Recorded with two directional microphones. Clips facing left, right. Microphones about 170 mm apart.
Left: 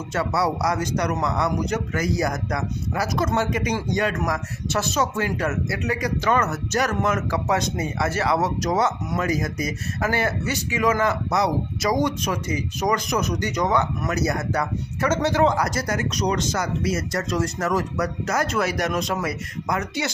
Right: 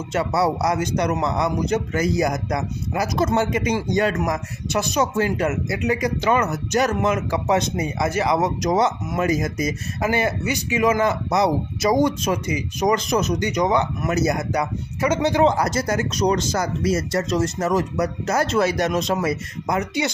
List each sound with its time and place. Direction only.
0.1 s speech: 20° right (ahead or behind)